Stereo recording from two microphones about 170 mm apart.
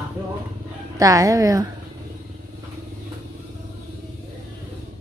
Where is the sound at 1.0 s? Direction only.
20° right (ahead or behind).